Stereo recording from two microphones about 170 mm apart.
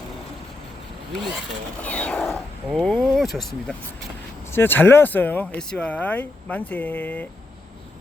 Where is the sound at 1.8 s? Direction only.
10° left (ahead or behind).